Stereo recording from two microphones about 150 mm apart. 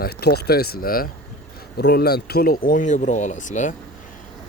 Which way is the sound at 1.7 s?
90° left.